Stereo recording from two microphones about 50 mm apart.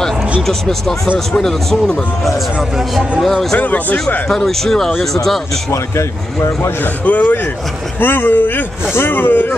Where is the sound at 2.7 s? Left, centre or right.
Centre.